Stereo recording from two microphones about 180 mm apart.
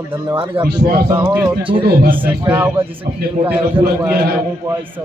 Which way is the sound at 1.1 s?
10° right (ahead or behind).